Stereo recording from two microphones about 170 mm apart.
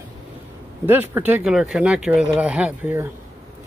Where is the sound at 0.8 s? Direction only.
10° right (ahead or behind).